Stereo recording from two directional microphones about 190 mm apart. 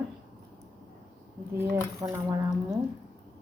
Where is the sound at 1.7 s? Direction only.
15° right (ahead or behind).